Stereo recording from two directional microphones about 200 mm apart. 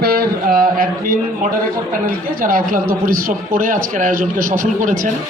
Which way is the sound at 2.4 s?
45° right (ahead or behind).